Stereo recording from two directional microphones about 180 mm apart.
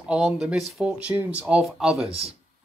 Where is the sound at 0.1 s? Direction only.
5° right (ahead or behind).